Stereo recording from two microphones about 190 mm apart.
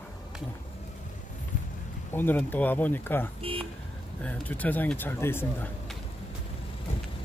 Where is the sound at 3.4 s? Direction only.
30° right (ahead or behind).